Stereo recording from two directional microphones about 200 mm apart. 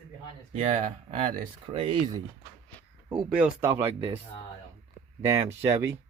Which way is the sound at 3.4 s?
5° right (ahead or behind).